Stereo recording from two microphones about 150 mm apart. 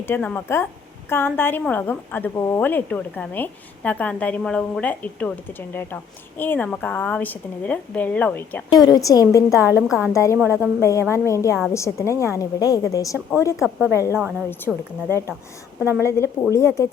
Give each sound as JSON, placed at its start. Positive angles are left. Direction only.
{"t": 0.0, "sound": "a woman's voice", "side_deg": 15}
{"t": 8.7, "sound": "a woman's voice", "side_deg": 25}
{"t": 9.6, "sound": "a woman's voice", "side_deg": -15}
{"t": 10.1, "sound": "a woman's voice", "side_deg": 20}
{"t": 10.4, "sound": "a woman's voice", "side_deg": -15}
{"t": 10.8, "sound": "a woman's voice", "side_deg": 20}
{"t": 13.6, "sound": "a woman's voice", "side_deg": -5}
{"t": 16.0, "sound": "a woman's voice", "side_deg": 20}